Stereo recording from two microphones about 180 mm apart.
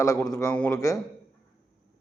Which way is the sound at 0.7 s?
20° left (ahead or behind).